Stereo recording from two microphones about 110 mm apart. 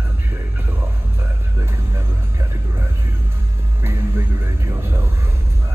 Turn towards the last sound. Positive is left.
turn(degrees=-20)  # may be behind; listen again after turning